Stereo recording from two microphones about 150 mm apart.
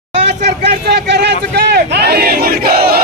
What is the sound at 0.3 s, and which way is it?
Speech, 90° right.